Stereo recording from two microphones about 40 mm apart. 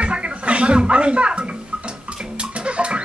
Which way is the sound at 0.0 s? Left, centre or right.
Right.